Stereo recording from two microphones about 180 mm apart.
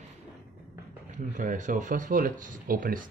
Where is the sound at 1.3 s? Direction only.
45° right (ahead or behind).